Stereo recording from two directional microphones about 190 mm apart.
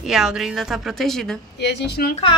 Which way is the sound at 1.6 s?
60° left (ahead or behind).